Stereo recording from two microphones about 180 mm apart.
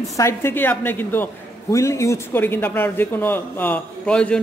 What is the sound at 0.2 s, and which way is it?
A woman's voice, 15° left (ahead or behind).